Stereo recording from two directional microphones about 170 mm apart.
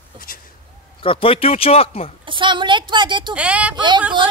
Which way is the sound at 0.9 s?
30° left (ahead or behind).